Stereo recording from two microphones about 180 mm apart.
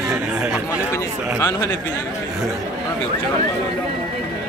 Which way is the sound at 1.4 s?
20° left (ahead or behind).